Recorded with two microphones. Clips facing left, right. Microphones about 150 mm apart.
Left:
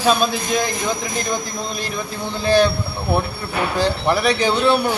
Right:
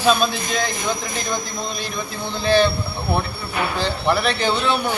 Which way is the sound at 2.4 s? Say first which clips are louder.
Left 1 dB; 10° left (ahead or behind).